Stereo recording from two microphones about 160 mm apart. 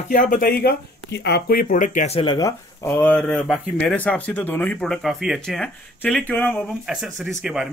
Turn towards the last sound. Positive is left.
turn(degrees=-5)  # may be behind; listen again after turning